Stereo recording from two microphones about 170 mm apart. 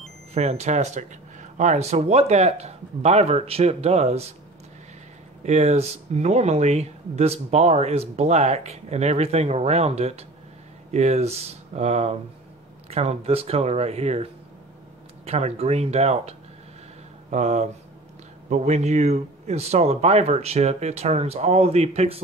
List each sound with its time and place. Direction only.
0.3 s speech: 40° right (ahead or behind)
5.4 s speech: 40° right (ahead or behind)